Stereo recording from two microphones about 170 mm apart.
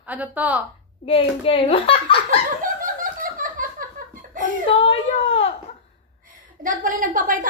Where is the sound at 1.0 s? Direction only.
35° left (ahead or behind).